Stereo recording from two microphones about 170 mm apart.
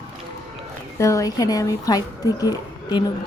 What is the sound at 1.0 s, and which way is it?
A woman's voice, 20° left (ahead or behind).